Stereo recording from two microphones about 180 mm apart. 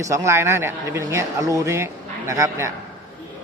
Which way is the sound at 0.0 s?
15° right (ahead or behind).